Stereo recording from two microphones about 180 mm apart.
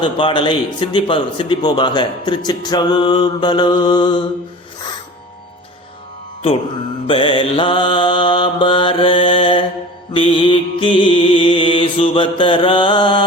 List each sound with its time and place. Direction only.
0.0 s a man's voice: 25° left (ahead or behind)
7.1 s a man's voice: 30° left (ahead or behind)
10.1 s mantra: 30° left (ahead or behind)